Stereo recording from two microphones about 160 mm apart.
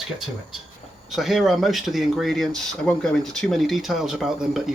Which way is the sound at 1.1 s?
Centre (ahead or behind).